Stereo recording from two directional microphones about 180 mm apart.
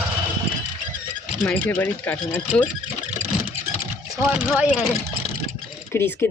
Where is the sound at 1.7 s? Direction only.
10° left (ahead or behind).